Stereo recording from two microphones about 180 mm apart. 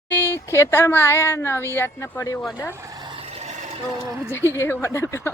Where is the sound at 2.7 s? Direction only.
20° right (ahead or behind); by 3.5 s 35° right (ahead or behind).